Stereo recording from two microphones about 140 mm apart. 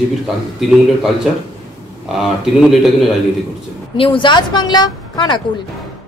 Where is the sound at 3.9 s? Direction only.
40° left (ahead or behind).